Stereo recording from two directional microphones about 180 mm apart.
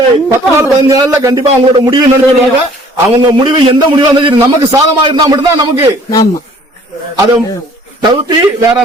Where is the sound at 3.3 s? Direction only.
25° right (ahead or behind).